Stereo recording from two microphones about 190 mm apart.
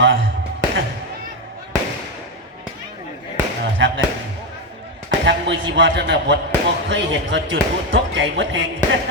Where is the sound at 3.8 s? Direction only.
75° right (ahead or behind).